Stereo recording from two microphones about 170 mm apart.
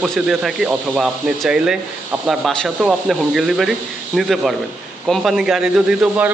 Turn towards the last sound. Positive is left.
turn(degrees=-10)  # may be behind; listen again after turning